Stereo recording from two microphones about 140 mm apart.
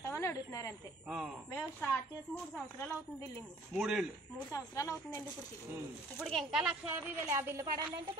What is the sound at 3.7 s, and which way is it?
Speech, 5° right (ahead or behind).